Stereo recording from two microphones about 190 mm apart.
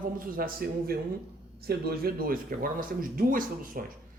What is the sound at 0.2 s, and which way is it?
Speech, 50° right (ahead or behind).